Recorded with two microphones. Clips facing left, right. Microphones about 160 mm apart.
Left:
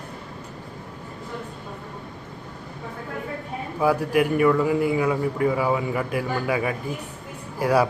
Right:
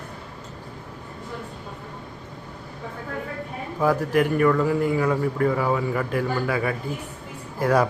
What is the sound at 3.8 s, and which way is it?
A man's voice, 10° left (ahead or behind).